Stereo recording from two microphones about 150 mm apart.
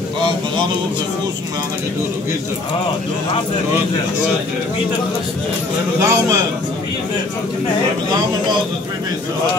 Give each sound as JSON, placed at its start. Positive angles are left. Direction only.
{"t": 5.9, "sound": "a man's voice", "side_deg": -15}